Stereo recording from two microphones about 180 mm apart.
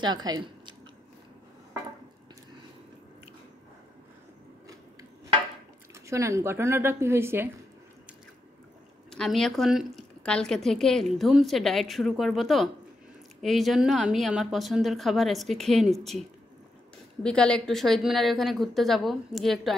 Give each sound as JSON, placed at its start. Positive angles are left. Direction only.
{"t": 0.0, "sound": "speech", "side_deg": -25}
{"t": 6.0, "sound": "speech", "side_deg": -15}
{"t": 9.1, "sound": "a woman's voice", "side_deg": 0}